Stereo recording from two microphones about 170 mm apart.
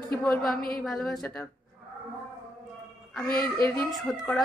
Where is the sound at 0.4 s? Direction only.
60° left (ahead or behind).